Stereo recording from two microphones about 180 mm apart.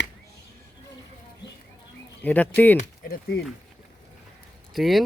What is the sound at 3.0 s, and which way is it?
Speech, 60° left (ahead or behind).